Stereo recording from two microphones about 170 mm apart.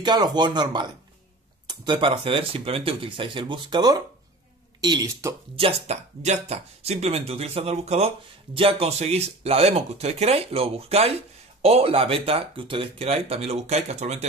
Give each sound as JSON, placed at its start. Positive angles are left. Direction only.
{"t": 0.0, "sound": "speech", "side_deg": -25}
{"t": 5.6, "sound": "speech", "side_deg": -35}